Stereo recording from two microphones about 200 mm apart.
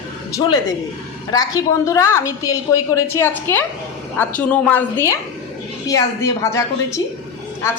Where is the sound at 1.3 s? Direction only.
15° left (ahead or behind).